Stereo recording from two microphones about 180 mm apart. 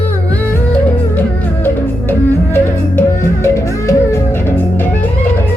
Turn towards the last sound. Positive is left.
turn(degrees=15)  # may be behind; listen again after turning